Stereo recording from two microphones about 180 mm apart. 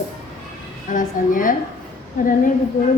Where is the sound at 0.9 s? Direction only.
50° left (ahead or behind).